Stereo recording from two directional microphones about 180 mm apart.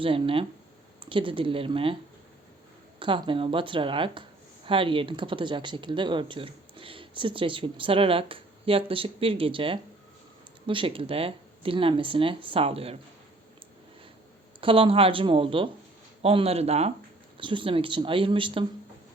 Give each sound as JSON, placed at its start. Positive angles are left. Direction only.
{"t": 0.0, "sound": "speech", "side_deg": -30}
{"t": 3.0, "sound": "speech", "side_deg": -30}
{"t": 14.6, "sound": "speech", "side_deg": -30}